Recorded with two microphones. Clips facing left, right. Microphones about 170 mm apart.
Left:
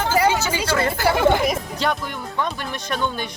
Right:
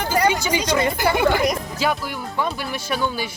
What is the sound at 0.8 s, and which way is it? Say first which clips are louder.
Speech: right 1 dB; 15° right (ahead or behind).